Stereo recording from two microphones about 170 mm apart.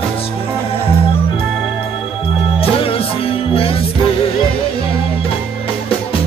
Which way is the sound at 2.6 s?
35° left (ahead or behind).